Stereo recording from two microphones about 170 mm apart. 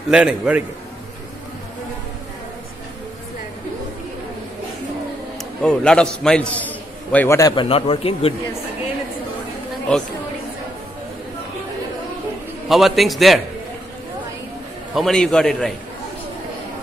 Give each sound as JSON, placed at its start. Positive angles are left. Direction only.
{"t": 0.1, "sound": "a man's voice", "side_deg": -5}
{"t": 5.6, "sound": "a man's voice", "side_deg": 5}
{"t": 7.6, "sound": "speech", "side_deg": 35}
{"t": 12.6, "sound": "a man's voice", "side_deg": 0}
{"t": 15.0, "sound": "a man's voice", "side_deg": 0}